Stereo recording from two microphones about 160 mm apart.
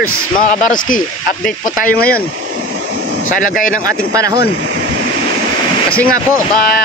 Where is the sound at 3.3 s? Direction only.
55° left (ahead or behind).